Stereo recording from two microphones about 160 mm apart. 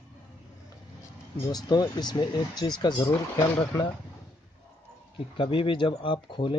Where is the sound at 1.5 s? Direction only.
25° left (ahead or behind).